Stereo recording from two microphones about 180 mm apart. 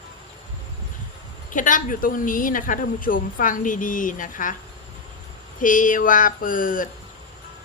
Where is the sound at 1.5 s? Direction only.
45° left (ahead or behind).